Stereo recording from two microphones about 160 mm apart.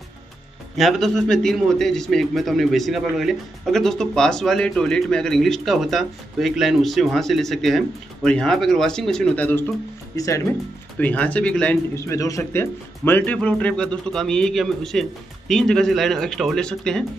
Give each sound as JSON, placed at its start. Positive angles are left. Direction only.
{"t": 0.7, "sound": "a man's voice", "side_deg": 0}
{"t": 11.0, "sound": "a man's voice", "side_deg": 10}